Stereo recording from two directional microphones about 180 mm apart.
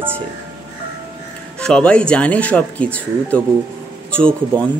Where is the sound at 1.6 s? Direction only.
5° left (ahead or behind).